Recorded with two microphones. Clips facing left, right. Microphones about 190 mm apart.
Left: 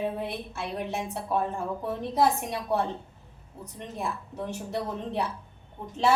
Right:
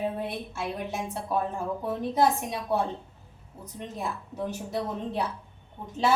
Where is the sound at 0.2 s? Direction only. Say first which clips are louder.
Right 1 dB; centre (ahead or behind).